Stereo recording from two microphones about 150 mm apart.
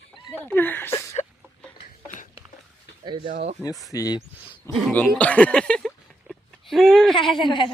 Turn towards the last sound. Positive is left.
turn(degrees=30)  # may be behind; listen again after turning